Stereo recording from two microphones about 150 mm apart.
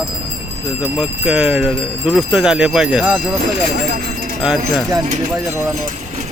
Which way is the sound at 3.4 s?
50° right (ahead or behind).